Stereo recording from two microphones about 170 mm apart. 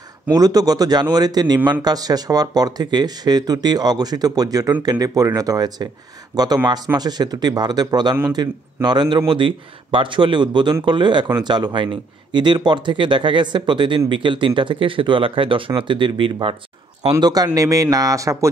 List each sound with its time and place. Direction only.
0.3 s speech: 20° right (ahead or behind)